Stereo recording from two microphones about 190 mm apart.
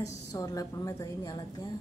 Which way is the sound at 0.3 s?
20° left (ahead or behind).